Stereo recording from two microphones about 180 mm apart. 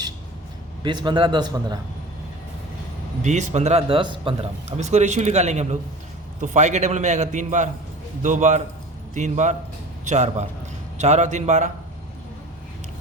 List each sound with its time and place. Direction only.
0.8 s a man's voice: 25° right (ahead or behind)
3.2 s a man's voice: 40° right (ahead or behind)
4.8 s a man's voice: 40° right (ahead or behind)